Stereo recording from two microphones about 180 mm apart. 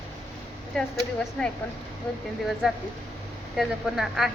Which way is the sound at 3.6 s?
Centre (ahead or behind).